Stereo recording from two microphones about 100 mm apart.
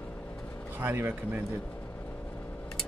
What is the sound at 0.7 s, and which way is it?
Speech, 20° right (ahead or behind).